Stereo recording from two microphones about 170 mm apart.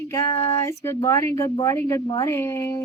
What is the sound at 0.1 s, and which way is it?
Speech, 15° left (ahead or behind).